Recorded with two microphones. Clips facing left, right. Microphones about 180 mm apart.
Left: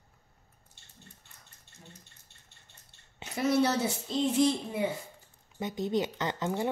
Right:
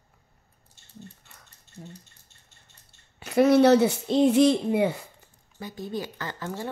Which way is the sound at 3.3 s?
70° right (ahead or behind).